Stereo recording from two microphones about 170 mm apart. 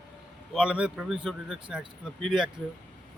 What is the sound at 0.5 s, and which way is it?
A man's voice, 5° right (ahead or behind).